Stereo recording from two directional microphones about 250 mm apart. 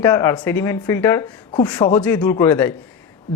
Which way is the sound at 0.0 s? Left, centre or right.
Centre.